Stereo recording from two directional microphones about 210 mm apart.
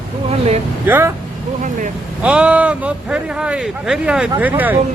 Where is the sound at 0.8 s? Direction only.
10° right (ahead or behind).